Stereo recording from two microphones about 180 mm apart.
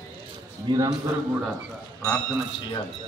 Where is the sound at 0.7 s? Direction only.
25° right (ahead or behind).